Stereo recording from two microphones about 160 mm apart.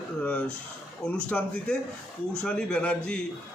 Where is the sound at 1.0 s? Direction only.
5° left (ahead or behind).